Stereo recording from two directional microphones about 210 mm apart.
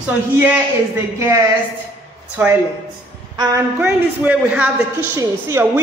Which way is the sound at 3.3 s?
20° right (ahead or behind).